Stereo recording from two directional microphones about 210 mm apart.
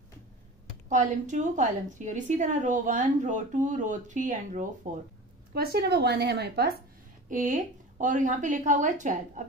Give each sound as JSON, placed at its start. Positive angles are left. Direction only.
{"t": 0.8, "sound": "a woman's voice", "side_deg": -35}
{"t": 5.5, "sound": "a woman's voice", "side_deg": -50}
{"t": 7.2, "sound": "a woman's voice", "side_deg": -35}